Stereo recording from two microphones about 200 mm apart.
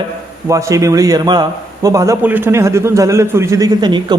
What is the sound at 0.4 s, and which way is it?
Speech, 15° right (ahead or behind).